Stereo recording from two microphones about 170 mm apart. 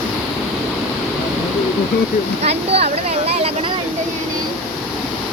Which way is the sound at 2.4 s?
35° right (ahead or behind).